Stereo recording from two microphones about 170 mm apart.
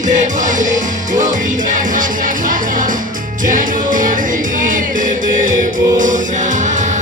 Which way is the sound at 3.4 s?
50° right (ahead or behind).